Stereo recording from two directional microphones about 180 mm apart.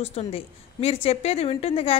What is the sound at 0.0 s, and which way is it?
A woman's voice, 35° left (ahead or behind).